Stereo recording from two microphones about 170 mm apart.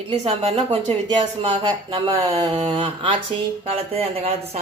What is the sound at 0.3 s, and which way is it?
A man's voice, 35° right (ahead or behind).